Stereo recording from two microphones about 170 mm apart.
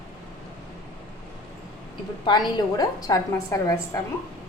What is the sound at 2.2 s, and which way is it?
A woman's voice, 25° left (ahead or behind).